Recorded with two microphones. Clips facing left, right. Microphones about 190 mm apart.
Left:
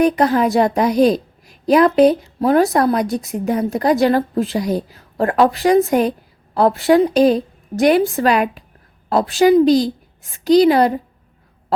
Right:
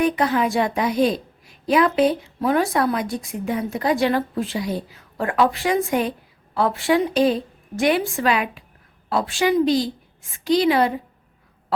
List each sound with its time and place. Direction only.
0.0 s a woman's voice: 40° left (ahead or behind)